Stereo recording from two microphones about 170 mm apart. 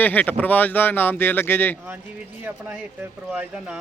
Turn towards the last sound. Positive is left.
turn(degrees=-5)  # may be behind; listen again after turning